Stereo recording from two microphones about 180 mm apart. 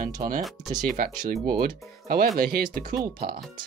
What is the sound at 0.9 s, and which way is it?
Speech, 50° right (ahead or behind).